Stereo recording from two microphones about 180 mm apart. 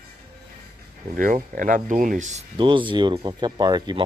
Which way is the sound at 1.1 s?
50° right (ahead or behind).